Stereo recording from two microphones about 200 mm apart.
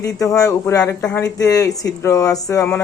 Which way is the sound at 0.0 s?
15° left (ahead or behind).